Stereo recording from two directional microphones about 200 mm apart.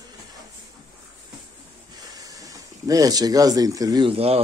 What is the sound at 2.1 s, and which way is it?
Speech, 15° right (ahead or behind).